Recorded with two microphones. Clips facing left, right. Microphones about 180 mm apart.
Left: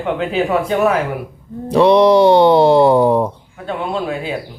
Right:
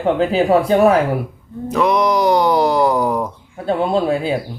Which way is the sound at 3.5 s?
35° right (ahead or behind).